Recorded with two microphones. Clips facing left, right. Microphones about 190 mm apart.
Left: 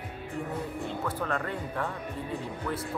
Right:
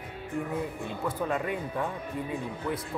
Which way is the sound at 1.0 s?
10° right (ahead or behind).